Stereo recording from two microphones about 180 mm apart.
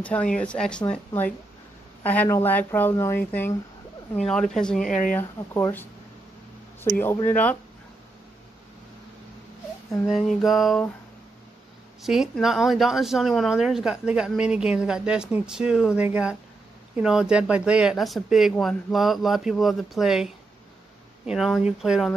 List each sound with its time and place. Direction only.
0.0 s speech: 5° left (ahead or behind)
4.3 s speech: 5° left (ahead or behind)
4.8 s speech: 45° left (ahead or behind)
5.1 s speech: 10° left (ahead or behind)
10.0 s speech: centre (ahead or behind)
12.0 s speech: centre (ahead or behind)
21.3 s speech: centre (ahead or behind)